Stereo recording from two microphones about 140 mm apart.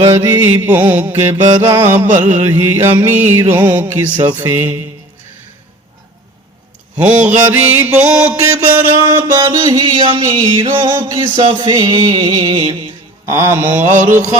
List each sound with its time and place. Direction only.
0.0 s music: 20° right (ahead or behind)
6.9 s music: 10° right (ahead or behind)
9.0 s music: 30° right (ahead or behind)
13.2 s music: 20° right (ahead or behind)